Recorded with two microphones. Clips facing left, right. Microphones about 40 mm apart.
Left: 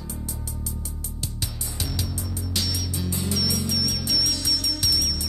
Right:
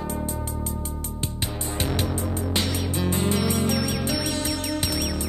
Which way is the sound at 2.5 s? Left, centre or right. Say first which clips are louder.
Right 2 dB; right.